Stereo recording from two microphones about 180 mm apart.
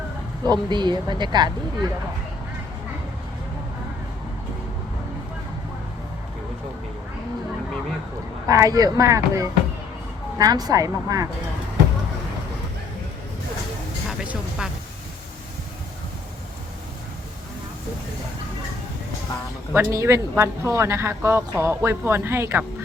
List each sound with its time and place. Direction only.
0.4 s speech: 25° right (ahead or behind)
8.4 s speech: 20° right (ahead or behind)
14.1 s speech: 5° right (ahead or behind)
19.7 s speech: 15° right (ahead or behind)